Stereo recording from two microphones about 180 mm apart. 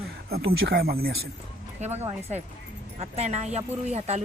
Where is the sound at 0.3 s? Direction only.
65° right (ahead or behind).